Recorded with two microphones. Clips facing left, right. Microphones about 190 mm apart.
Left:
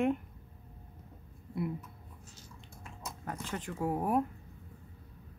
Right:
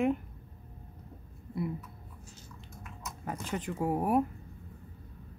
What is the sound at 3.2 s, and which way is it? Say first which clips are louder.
Speech: right 4 dB; 15° right (ahead or behind).